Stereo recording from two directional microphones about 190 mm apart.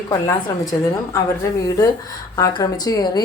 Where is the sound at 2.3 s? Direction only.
20° left (ahead or behind).